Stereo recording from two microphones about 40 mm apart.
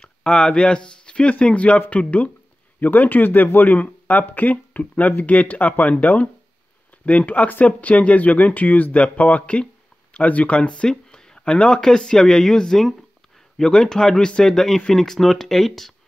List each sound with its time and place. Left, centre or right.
0.2 s speech: left
2.8 s speech: left
7.6 s speech: left
10.9 s a sound: centre
11.5 s speech: left
14.4 s speech: centre